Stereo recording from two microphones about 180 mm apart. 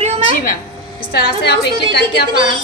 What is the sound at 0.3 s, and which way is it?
Speech, 50° left (ahead or behind).